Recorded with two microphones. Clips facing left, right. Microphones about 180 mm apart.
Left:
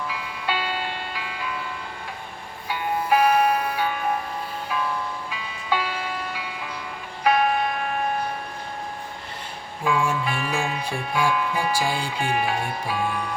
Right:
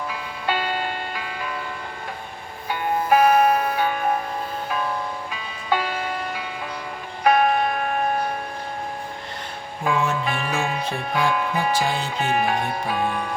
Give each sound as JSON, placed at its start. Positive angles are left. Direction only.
{"t": 0.1, "sound": "music", "side_deg": -45}
{"t": 2.6, "sound": "music", "side_deg": -50}
{"t": 5.3, "sound": "music", "side_deg": -45}
{"t": 9.8, "sound": "music", "side_deg": -45}
{"t": 10.6, "sound": "speech", "side_deg": -45}